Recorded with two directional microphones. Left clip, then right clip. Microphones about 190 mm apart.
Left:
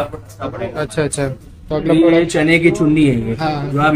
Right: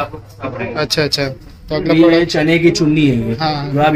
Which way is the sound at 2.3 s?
25° right (ahead or behind).